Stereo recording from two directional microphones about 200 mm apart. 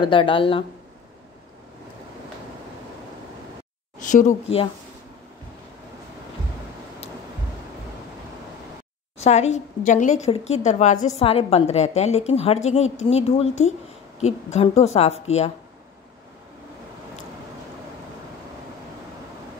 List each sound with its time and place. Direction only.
0.0 s speech: 25° left (ahead or behind)
4.0 s a woman's voice: 40° left (ahead or behind)
9.2 s a woman's voice: 35° left (ahead or behind)